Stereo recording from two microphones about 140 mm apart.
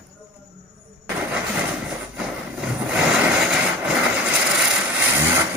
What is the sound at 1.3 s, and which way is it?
Vehicle, 5° right (ahead or behind).